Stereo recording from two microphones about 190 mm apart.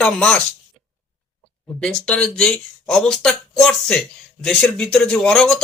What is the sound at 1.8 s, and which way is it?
Speech, 5° left (ahead or behind).